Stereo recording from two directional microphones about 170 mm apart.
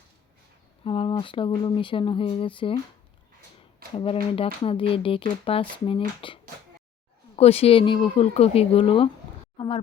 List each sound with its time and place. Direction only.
0.9 s speech: 30° left (ahead or behind)
3.9 s speech: 35° left (ahead or behind)